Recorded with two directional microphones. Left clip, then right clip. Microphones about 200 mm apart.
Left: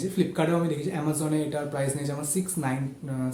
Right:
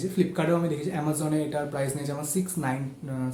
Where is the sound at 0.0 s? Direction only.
Centre (ahead or behind).